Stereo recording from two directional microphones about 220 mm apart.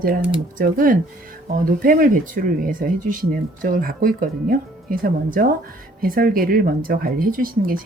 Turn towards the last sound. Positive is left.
turn(degrees=-40)  # may be behind; listen again after turning